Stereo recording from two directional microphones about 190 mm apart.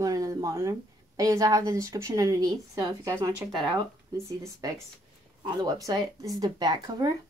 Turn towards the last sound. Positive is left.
turn(degrees=-20)  # may be behind; listen again after turning